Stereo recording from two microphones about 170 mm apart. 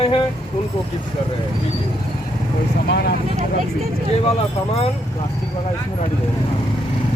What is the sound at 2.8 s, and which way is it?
Speech, 80° left.